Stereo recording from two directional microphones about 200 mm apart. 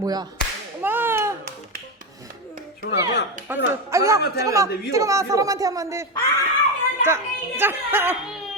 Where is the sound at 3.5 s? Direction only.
10° right (ahead or behind).